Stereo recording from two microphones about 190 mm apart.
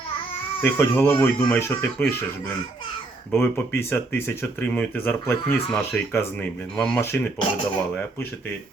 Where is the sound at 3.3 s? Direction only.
10° left (ahead or behind).